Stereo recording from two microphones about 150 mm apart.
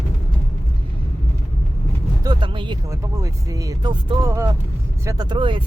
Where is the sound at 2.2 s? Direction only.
35° right (ahead or behind).